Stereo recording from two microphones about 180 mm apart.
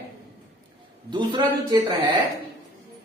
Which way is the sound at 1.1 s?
25° right (ahead or behind).